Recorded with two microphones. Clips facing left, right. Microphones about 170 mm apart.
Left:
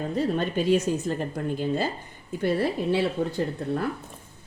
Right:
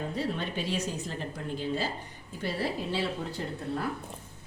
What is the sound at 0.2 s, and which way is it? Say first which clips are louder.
A woman's voice: left 9 dB; 45° left (ahead or behind).